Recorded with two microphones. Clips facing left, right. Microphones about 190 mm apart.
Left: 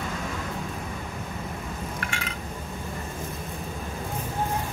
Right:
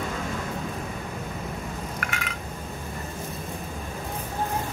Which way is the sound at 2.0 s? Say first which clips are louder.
Right 1 dB; 30° left (ahead or behind).